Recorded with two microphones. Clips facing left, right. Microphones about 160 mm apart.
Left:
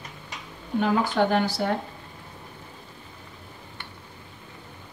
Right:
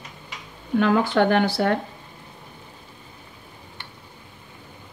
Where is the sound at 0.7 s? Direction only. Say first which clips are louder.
Right 4 dB; 70° right (ahead or behind).